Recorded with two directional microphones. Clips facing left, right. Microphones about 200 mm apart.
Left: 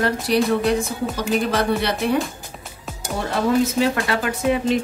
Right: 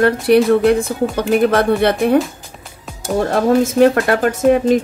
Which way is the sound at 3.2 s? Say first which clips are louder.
Right 4 dB; 50° right (ahead or behind).